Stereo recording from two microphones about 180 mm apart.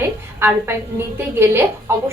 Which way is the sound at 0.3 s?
15° right (ahead or behind).